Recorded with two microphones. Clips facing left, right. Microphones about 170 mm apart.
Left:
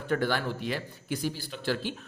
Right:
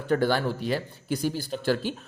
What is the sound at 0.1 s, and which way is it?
Speech, 35° right (ahead or behind).